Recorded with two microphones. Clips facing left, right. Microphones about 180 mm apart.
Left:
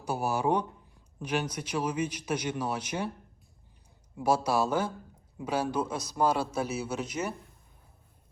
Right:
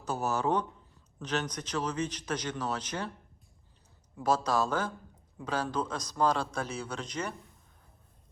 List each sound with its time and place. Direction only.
0.0 s a man's voice: 10° left (ahead or behind)
4.2 s a man's voice: 10° left (ahead or behind)